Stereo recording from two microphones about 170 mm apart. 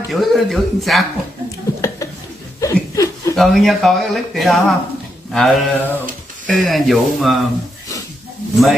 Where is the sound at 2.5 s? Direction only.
20° left (ahead or behind).